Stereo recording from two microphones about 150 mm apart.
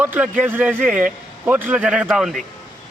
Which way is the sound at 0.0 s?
10° right (ahead or behind).